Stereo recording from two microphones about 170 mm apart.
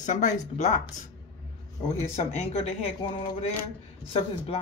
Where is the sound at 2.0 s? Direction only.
40° left (ahead or behind).